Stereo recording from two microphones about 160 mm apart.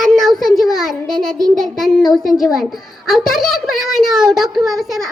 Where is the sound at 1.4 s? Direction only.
Centre (ahead or behind).